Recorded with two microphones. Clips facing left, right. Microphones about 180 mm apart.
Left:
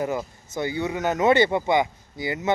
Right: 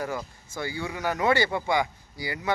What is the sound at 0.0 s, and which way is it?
Speech, 20° left (ahead or behind).